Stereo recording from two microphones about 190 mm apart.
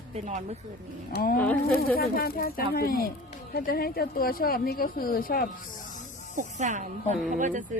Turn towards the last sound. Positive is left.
turn(degrees=-40)  # may be behind; listen again after turning